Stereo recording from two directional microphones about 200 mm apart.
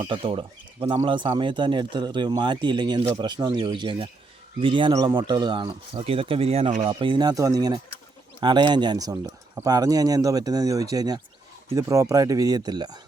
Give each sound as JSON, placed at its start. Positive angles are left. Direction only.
{"t": 0.0, "sound": "speech", "side_deg": -25}
{"t": 6.8, "sound": "speech", "side_deg": -25}